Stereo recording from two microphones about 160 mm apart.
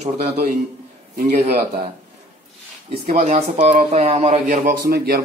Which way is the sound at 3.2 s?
45° right (ahead or behind).